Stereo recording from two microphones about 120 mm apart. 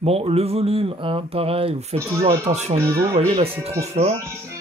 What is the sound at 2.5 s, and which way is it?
Speech, 70° right (ahead or behind).